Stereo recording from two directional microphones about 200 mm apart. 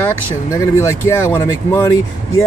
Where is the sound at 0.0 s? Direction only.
15° left (ahead or behind).